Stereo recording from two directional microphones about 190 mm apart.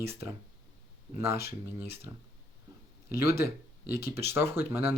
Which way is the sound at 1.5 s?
55° left (ahead or behind).